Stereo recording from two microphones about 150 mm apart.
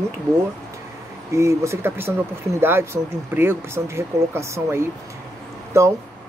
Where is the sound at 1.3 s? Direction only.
20° right (ahead or behind).